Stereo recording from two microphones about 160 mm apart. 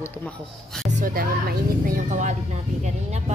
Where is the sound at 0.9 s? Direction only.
55° right (ahead or behind).